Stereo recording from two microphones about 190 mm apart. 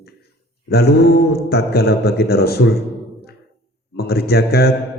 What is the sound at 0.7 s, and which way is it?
A man's voice, 55° left (ahead or behind).